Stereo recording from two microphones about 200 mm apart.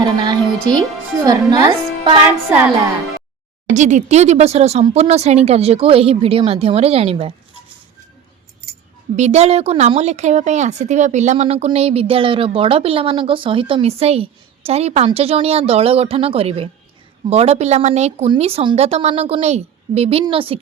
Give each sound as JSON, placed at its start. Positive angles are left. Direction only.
{"t": 0.0, "sound": "music", "side_deg": -20}
{"t": 1.2, "sound": "a woman's voice", "side_deg": -20}
{"t": 3.8, "sound": "a woman's voice", "side_deg": -35}
{"t": 9.1, "sound": "a woman's voice", "side_deg": -35}